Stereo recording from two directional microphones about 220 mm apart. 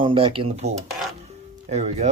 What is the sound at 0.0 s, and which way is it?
Speech, 25° right (ahead or behind).